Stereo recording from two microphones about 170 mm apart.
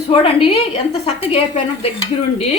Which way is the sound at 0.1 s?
35° left (ahead or behind).